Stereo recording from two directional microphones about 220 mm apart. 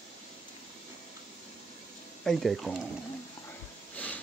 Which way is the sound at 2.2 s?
Centre (ahead or behind).